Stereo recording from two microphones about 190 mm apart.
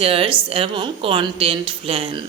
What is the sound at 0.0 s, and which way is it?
Speech, 30° right (ahead or behind).